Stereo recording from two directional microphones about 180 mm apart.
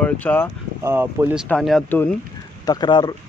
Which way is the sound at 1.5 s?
Centre (ahead or behind).